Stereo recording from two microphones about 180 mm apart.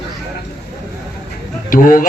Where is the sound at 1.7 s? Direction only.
50° left (ahead or behind).